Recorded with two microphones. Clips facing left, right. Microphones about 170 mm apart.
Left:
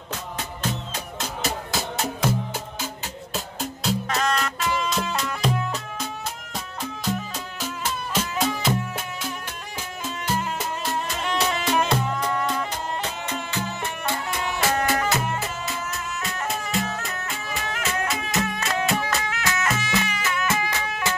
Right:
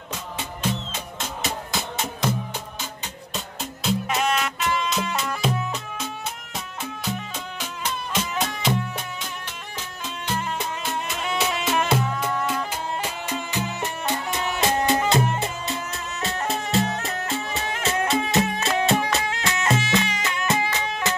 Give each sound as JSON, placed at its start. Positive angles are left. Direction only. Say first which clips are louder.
{"t": 0.9, "sound": "music", "louder": "left 1 dB", "side_deg": 0}
{"t": 3.3, "sound": "music", "louder": "left 2 dB", "side_deg": 0}
{"t": 10.0, "sound": "music", "louder": "left 1 dB", "side_deg": 5}